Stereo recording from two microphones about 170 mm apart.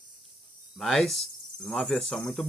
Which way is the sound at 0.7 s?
Centre (ahead or behind).